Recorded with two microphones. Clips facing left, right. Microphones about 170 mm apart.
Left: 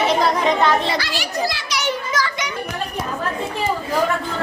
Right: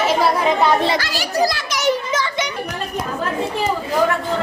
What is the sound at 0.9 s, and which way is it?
A child's voice, 45° right (ahead or behind).